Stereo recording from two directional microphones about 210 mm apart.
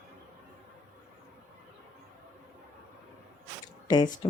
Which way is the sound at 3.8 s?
20° left (ahead or behind).